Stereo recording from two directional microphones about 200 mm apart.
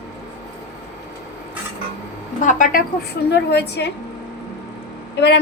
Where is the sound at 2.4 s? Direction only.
40° left (ahead or behind).